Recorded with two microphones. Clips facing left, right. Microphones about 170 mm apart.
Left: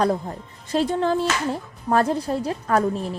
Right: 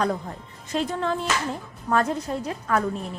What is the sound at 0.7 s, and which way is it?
A woman's voice, 30° left (ahead or behind).